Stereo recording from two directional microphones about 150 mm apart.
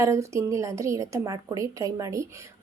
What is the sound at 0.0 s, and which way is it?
A woman's voice, 20° right (ahead or behind).